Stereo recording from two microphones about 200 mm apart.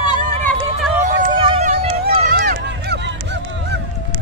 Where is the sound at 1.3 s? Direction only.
25° right (ahead or behind).